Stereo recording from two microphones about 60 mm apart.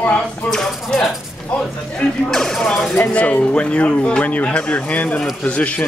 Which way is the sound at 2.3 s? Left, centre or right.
Centre.